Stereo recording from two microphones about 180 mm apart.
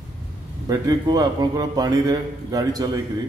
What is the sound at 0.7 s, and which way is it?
A man's voice, 20° right (ahead or behind).